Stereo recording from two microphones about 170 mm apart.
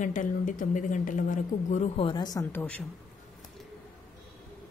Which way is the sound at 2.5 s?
10° left (ahead or behind).